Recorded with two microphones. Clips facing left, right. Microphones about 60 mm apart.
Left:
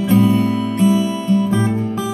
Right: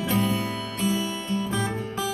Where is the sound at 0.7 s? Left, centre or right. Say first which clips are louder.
Left 10 dB; left.